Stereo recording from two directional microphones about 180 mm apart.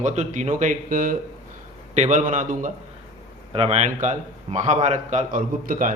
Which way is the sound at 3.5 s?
35° right (ahead or behind).